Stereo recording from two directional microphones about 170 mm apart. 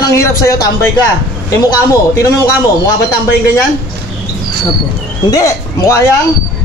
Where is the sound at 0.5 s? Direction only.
20° left (ahead or behind).